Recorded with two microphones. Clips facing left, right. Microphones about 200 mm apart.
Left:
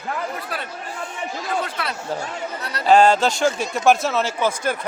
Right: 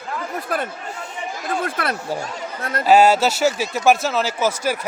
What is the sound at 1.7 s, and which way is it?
Speech, 50° right (ahead or behind).